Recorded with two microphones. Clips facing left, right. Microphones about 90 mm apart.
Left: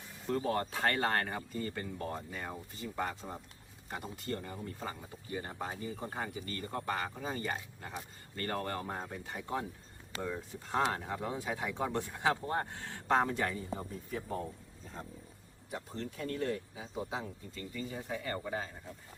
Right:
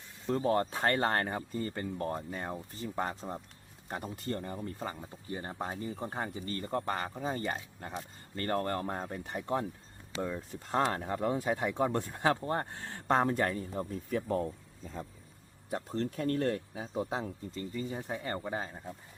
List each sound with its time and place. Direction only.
0.3 s speech: 30° right (ahead or behind)
10.7 s speech: 40° right (ahead or behind)
15.7 s speech: 45° right (ahead or behind)
17.5 s speech: 30° right (ahead or behind)